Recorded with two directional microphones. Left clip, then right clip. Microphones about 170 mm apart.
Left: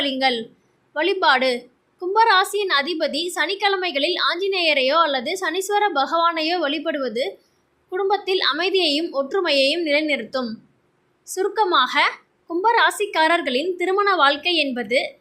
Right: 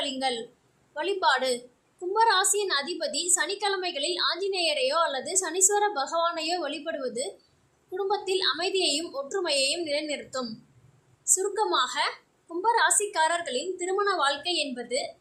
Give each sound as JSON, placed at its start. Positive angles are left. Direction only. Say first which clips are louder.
{"t": 0.0, "sound": "a woman's voice", "louder": "left 8 dB", "side_deg": 20}